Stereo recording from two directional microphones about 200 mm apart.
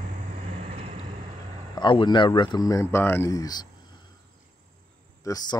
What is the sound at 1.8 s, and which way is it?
Speech, 25° left (ahead or behind).